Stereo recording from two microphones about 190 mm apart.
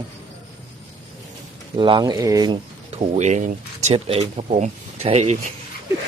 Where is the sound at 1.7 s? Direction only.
25° right (ahead or behind).